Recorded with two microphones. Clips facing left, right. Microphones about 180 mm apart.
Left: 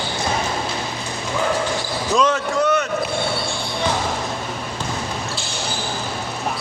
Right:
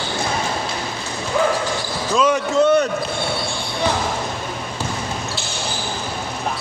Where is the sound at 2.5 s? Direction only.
30° right (ahead or behind).